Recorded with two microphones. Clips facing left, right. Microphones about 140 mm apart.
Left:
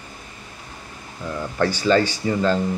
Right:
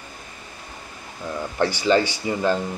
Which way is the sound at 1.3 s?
15° right (ahead or behind).